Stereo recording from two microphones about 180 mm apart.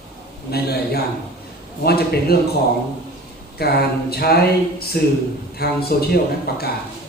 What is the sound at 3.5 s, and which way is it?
A man's voice, 60° left (ahead or behind).